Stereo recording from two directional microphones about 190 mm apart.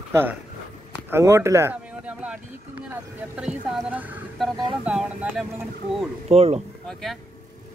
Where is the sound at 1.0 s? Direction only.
15° right (ahead or behind).